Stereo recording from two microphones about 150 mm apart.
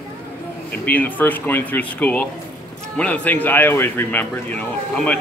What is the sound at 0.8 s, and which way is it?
Speech, 10° left (ahead or behind).